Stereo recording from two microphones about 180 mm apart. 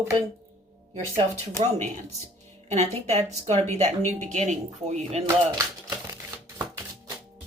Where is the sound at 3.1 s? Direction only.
40° right (ahead or behind).